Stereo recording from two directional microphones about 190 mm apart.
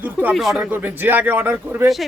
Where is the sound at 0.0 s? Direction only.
10° right (ahead or behind).